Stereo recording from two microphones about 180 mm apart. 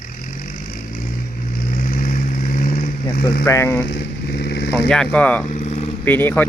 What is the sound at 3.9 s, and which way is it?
Vehicle, 70° left (ahead or behind).